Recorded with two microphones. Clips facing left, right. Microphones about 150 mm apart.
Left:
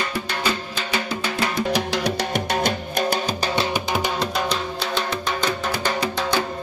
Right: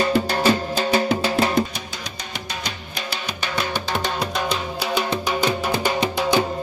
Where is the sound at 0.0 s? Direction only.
35° right (ahead or behind).